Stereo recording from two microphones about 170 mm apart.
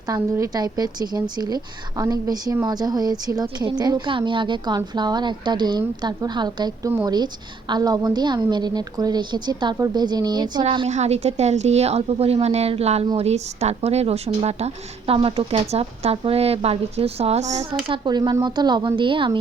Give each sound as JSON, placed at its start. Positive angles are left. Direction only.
{"t": 0.1, "sound": "a woman's voice", "side_deg": -20}
{"t": 10.8, "sound": "speech", "side_deg": -40}
{"t": 17.8, "sound": "a woman's voice", "side_deg": -30}